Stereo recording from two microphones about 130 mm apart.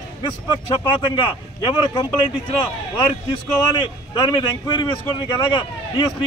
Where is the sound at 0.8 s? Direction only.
40° left (ahead or behind).